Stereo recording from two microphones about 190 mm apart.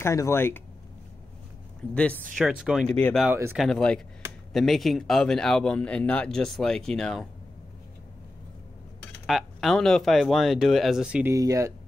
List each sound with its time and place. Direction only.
0.0 s speech: 15° left (ahead or behind)
2.0 s speech: 5° left (ahead or behind)
3.3 s speech: 15° right (ahead or behind)
3.5 s speech: centre (ahead or behind)
9.2 s speech: centre (ahead or behind)
11.3 s speech: 15° right (ahead or behind)